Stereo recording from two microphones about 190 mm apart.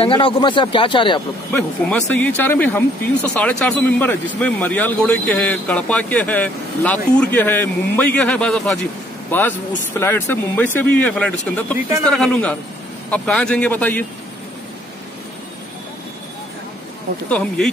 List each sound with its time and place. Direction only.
0.0 s speech: 30° left (ahead or behind)
1.5 s a man's voice: 10° left (ahead or behind)
17.3 s a man's voice: 5° left (ahead or behind)